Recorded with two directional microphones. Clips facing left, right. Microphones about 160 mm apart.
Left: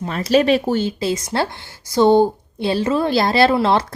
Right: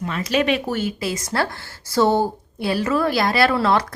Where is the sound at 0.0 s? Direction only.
35° left (ahead or behind).